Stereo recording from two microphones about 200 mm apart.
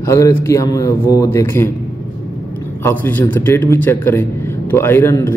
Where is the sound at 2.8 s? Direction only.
10° left (ahead or behind).